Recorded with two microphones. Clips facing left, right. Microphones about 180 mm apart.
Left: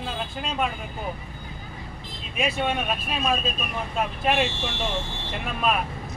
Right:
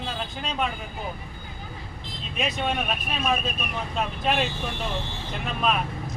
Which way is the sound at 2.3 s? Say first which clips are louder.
Left 2 dB; 5° left (ahead or behind).